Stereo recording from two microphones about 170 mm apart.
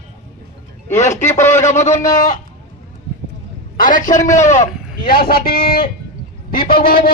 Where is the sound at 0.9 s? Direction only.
45° left (ahead or behind).